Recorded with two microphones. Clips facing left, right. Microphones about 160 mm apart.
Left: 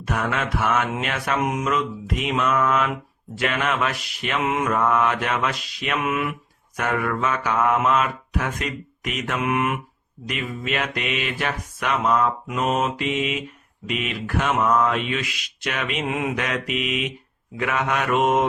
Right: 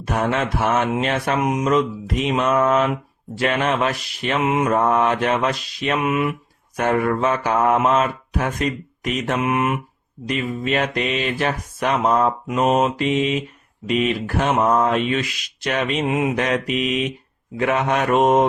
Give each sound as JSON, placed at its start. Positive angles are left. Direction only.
{"t": 0.0, "sound": "mantra", "side_deg": -30}
{"t": 1.4, "sound": "mantra", "side_deg": -20}
{"t": 2.2, "sound": "mantra", "side_deg": -30}
{"t": 4.4, "sound": "mantra", "side_deg": -20}
{"t": 4.7, "sound": "mantra", "side_deg": -30}
{"t": 6.0, "sound": "mantra", "side_deg": -20}
{"t": 6.7, "sound": "mantra", "side_deg": -30}
{"t": 10.2, "sound": "mantra", "side_deg": -35}
{"t": 16.0, "sound": "mantra", "side_deg": -20}
{"t": 16.3, "sound": "mantra", "side_deg": -35}